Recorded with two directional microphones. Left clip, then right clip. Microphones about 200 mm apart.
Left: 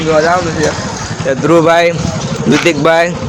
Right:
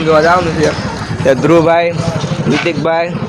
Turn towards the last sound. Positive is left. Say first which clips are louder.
# left 4 dB
turn(degrees=20)  # may be behind; listen again after turning